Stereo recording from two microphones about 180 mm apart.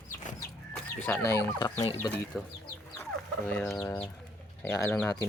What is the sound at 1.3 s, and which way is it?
Speech, 20° left (ahead or behind).